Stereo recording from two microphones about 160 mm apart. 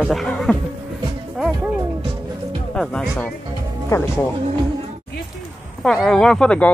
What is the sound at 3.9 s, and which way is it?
Speech, 20° left (ahead or behind).